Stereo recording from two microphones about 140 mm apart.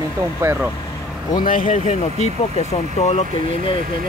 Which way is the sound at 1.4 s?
75° left (ahead or behind).